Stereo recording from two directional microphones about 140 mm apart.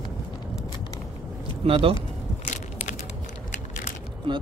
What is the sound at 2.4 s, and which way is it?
Crushing, 60° left (ahead or behind).